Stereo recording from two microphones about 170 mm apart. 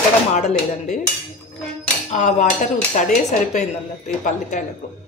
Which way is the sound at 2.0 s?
40° left (ahead or behind).